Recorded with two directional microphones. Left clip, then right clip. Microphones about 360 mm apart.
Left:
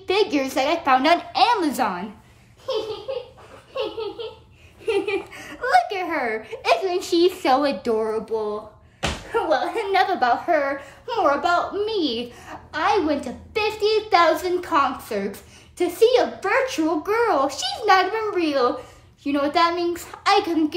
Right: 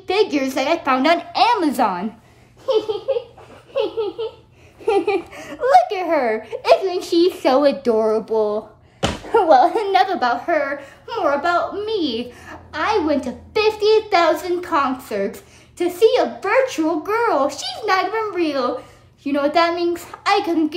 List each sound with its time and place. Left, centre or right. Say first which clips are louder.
0.0 s a child's voice: right 2 dB; centre
4.8 s a child's voice: right 5 dB; centre
9.5 s a child's voice: right 10 dB; centre
9.8 s a child's voice: right 2 dB; centre